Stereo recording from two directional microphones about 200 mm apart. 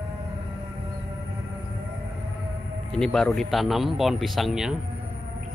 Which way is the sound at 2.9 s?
5° left (ahead or behind).